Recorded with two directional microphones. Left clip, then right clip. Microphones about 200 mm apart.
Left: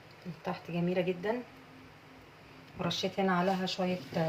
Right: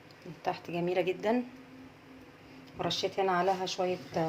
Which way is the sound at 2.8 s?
50° right (ahead or behind).